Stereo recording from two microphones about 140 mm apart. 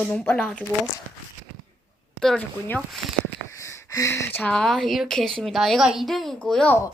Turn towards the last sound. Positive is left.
turn(degrees=5)  # may be behind; listen again after turning